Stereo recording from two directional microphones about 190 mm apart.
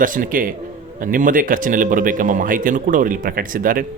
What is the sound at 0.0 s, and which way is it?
Speech, 45° right (ahead or behind).